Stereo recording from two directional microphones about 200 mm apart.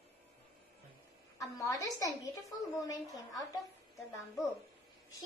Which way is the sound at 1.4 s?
15° left (ahead or behind).